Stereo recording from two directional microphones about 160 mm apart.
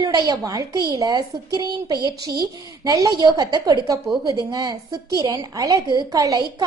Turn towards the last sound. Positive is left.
turn(degrees=-20)  # may be behind; listen again after turning